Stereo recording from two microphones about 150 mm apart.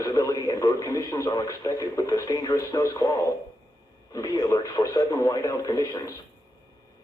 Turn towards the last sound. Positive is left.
turn(degrees=25)  # may be behind; listen again after turning